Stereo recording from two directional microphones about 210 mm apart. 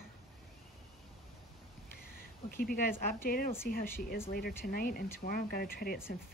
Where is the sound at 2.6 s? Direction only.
45° left (ahead or behind).